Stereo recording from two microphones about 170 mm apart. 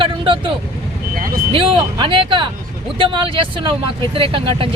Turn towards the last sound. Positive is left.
turn(degrees=-30)  # may be behind; listen again after turning